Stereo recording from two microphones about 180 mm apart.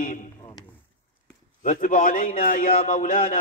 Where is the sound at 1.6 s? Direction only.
45° left (ahead or behind).